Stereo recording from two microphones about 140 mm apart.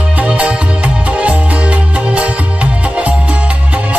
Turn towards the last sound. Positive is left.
turn(degrees=-10)  # may be behind; listen again after turning